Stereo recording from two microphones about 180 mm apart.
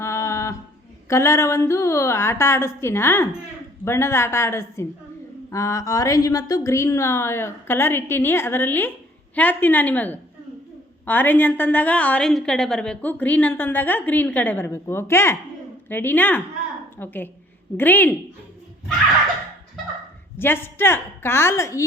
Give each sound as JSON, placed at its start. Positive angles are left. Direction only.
{"t": 0.0, "sound": "a sound", "side_deg": 15}
{"t": 1.1, "sound": "a woman's voice", "side_deg": 15}
{"t": 20.4, "sound": "a woman's voice", "side_deg": 10}